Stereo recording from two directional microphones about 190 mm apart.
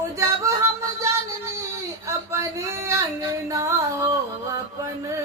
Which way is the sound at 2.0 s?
15° right (ahead or behind).